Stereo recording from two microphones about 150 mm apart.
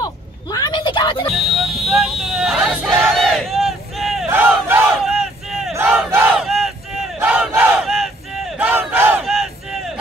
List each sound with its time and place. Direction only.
0.0 s a sound: 25° left (ahead or behind)
1.3 s vehicle: centre (ahead or behind)
1.9 s battle cry: 5° right (ahead or behind)
4.3 s crowd: 15° right (ahead or behind)
5.0 s battle cry: centre (ahead or behind)
8.6 s battle cry: 10° right (ahead or behind)
9.2 s battle cry: centre (ahead or behind)